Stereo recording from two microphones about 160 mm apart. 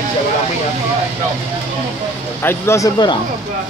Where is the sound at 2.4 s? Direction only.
15° left (ahead or behind).